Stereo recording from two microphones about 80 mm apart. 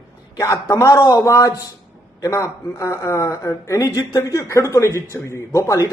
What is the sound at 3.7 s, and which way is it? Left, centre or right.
Speech, left.